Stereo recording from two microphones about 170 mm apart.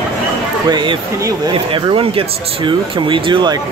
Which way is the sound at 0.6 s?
25° right (ahead or behind).